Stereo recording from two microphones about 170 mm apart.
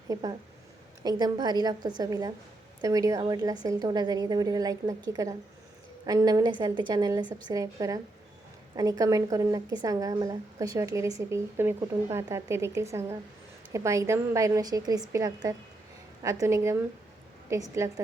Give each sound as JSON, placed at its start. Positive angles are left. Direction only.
{"t": 0.1, "sound": "a woman's voice", "side_deg": -20}